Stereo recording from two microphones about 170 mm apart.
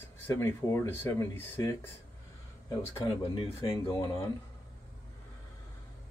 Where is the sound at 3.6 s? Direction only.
20° left (ahead or behind).